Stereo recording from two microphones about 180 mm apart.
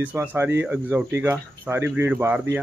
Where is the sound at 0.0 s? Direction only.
10° right (ahead or behind).